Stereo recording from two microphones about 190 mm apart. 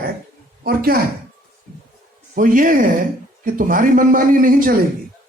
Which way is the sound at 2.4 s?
45° right (ahead or behind).